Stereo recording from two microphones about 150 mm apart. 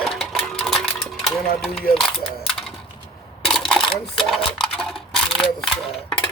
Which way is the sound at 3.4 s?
5° left (ahead or behind).